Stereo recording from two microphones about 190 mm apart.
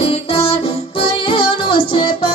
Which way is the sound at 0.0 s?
30° left (ahead or behind).